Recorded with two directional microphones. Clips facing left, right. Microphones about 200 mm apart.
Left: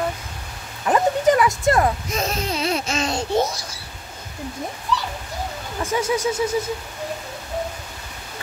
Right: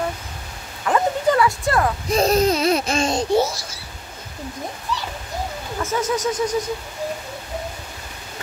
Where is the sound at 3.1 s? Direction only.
20° right (ahead or behind).